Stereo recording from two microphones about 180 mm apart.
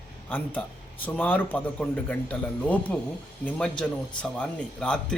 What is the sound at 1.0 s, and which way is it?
A man's voice, 10° left (ahead or behind).